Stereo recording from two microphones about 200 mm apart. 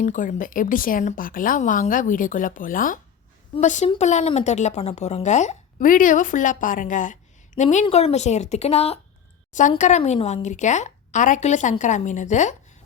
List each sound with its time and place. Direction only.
0.0 s speech: 40° left (ahead or behind)